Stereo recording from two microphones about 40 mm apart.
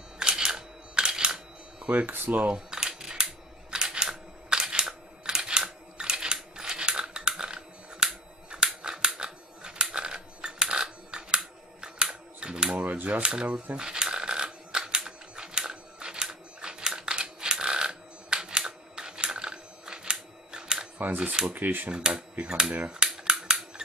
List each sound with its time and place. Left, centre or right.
0.2 s camera: centre
2.0 s speech: right
2.5 s camera: centre
3.7 s a sound: centre
12.8 s typewriter: right
13.2 s speech: right
13.7 s typewriter: centre
21.2 s speech: right
21.5 s speech: right
21.9 s speech: right
23.0 s cap gun: centre